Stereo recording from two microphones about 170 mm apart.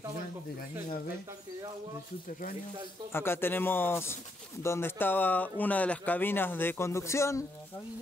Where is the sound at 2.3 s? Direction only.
50° left (ahead or behind).